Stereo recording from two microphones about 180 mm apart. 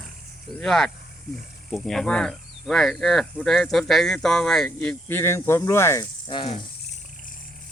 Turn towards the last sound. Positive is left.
turn(degrees=25)  # may be behind; listen again after turning